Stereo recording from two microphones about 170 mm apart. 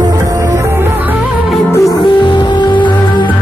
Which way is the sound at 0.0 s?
20° right (ahead or behind).